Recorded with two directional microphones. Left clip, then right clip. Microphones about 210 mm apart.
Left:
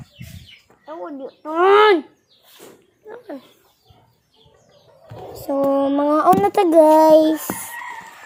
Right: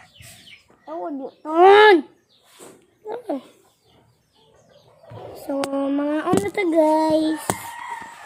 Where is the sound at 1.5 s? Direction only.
40° right (ahead or behind).